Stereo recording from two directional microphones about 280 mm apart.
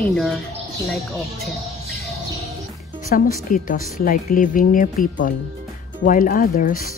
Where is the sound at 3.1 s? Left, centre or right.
Left.